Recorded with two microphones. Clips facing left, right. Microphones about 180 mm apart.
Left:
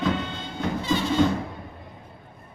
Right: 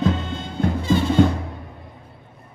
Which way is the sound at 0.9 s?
55° right (ahead or behind).